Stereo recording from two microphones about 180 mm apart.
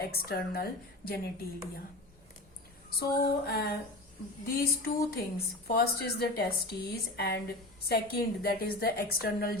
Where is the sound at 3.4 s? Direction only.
60° left (ahead or behind).